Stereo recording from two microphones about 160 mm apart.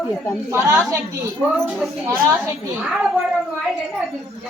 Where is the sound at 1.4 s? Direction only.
5° left (ahead or behind).